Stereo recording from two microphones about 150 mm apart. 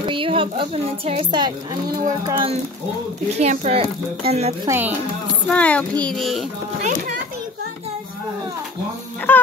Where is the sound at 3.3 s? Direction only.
45° right (ahead or behind).